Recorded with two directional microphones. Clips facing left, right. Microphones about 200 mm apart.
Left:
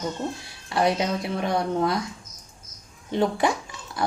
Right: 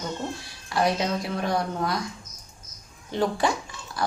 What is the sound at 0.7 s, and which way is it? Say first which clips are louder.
Speech: left 1 dB; 25° left (ahead or behind).